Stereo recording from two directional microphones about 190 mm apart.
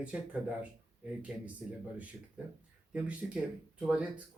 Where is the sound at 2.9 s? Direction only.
5° right (ahead or behind).